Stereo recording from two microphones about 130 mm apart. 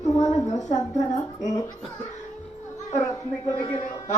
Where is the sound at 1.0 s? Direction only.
30° left (ahead or behind).